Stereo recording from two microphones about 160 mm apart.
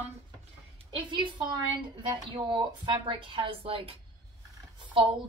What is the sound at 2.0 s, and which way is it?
A woman's voice, 30° right (ahead or behind).